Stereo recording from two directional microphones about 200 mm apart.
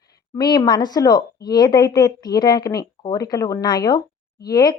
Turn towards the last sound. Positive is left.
turn(degrees=20)  # may be behind; listen again after turning